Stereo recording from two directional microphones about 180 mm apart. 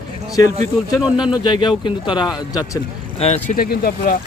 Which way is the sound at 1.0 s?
5° right (ahead or behind).